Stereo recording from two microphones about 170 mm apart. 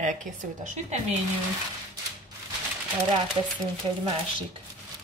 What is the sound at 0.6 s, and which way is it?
Speech, 45° right (ahead or behind).